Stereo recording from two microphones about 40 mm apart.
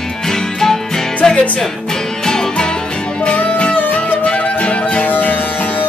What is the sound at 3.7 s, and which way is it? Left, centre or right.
Music, left.